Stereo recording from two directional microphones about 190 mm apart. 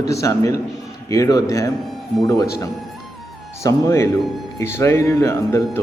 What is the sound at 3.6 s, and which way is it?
Speech, 15° left (ahead or behind).